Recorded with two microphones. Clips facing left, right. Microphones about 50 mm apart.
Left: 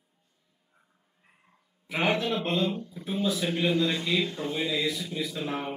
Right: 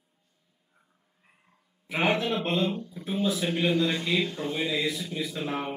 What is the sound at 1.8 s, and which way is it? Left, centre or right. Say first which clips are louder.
Speech: right 1 dB; centre.